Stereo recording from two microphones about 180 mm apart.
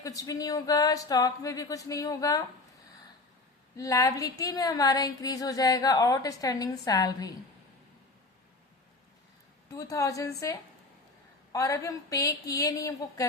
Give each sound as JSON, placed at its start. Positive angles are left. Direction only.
{"t": 0.0, "sound": "a woman's voice", "side_deg": 20}
{"t": 3.8, "sound": "a woman's voice", "side_deg": 20}
{"t": 9.7, "sound": "speech", "side_deg": 20}